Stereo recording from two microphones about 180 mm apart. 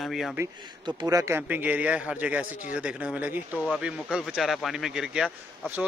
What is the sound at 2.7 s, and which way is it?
A man's voice, 5° right (ahead or behind).